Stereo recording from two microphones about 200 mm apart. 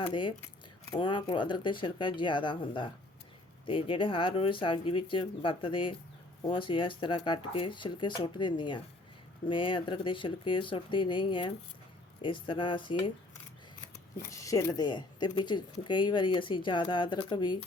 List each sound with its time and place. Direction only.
0.0 s speech: 25° left (ahead or behind)
14.3 s speech: 15° left (ahead or behind)